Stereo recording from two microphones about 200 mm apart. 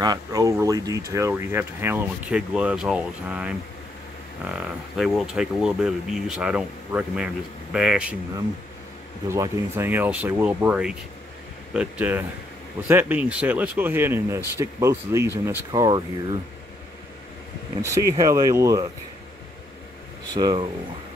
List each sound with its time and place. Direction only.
0.0 s speech: 20° right (ahead or behind)
9.3 s speech: 15° right (ahead or behind)
17.8 s speech: 15° right (ahead or behind)
20.3 s speech: 20° right (ahead or behind)